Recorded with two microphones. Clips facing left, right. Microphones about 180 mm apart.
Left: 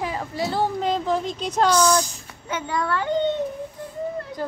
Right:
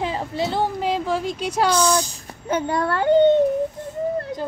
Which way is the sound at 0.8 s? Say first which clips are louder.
Right 1 dB; 5° right (ahead or behind).